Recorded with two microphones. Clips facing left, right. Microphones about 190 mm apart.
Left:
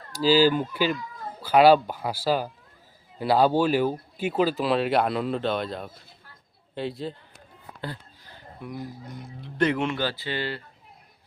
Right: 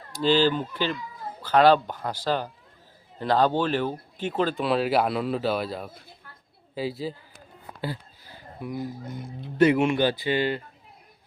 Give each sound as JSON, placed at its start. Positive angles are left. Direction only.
{"t": 0.1, "sound": "speech", "side_deg": 5}
{"t": 6.3, "sound": "a sound", "side_deg": -55}
{"t": 6.7, "sound": "speech", "side_deg": -5}